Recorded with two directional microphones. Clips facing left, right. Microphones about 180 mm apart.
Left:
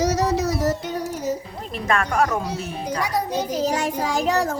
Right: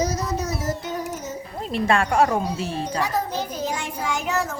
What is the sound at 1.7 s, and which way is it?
Speech, 30° right (ahead or behind).